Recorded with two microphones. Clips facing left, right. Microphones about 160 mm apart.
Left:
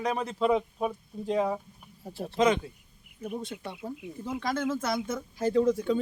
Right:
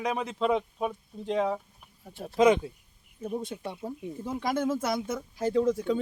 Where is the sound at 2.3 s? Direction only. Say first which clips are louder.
Right 3 dB; 10° right (ahead or behind).